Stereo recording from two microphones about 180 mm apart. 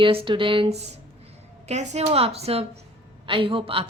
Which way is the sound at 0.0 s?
30° right (ahead or behind).